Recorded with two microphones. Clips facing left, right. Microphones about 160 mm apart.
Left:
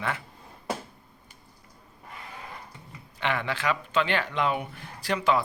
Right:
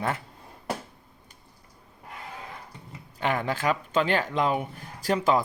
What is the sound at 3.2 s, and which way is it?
Speech, 40° right (ahead or behind).